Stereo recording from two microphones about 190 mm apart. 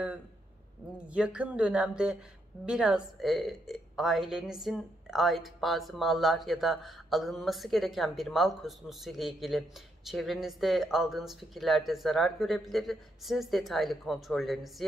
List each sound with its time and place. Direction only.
1.0 s a woman's voice: 5° right (ahead or behind)